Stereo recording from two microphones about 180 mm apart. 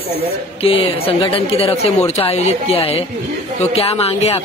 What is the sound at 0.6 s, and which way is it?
Speech, 30° left (ahead or behind).